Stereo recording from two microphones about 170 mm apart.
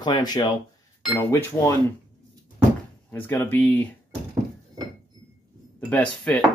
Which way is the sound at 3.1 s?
15° left (ahead or behind).